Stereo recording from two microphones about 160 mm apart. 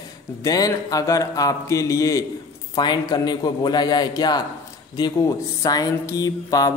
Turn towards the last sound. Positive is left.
turn(degrees=20)  # may be behind; listen again after turning